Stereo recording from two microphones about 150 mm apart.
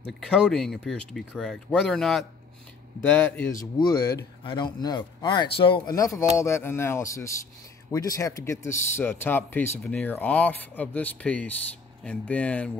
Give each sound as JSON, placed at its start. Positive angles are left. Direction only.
{"t": 0.0, "sound": "speech", "side_deg": 0}
{"t": 3.0, "sound": "speech", "side_deg": 10}
{"t": 3.8, "sound": "speech", "side_deg": 25}
{"t": 5.9, "sound": "speech", "side_deg": 20}